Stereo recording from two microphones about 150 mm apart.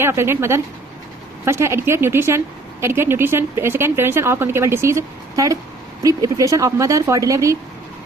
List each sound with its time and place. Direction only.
0.0 s speech: 15° right (ahead or behind)